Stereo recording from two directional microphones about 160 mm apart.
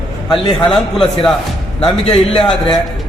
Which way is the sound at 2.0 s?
40° left (ahead or behind).